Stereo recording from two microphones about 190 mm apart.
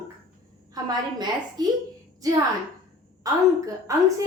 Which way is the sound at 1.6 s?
20° right (ahead or behind).